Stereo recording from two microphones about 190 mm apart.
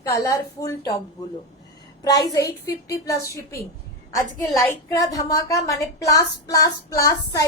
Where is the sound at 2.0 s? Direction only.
20° left (ahead or behind).